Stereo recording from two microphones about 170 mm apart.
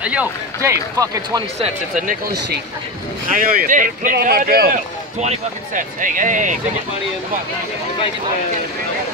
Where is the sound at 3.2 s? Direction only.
55° right (ahead or behind).